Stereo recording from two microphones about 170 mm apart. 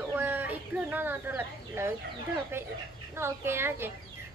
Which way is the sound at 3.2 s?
15° right (ahead or behind).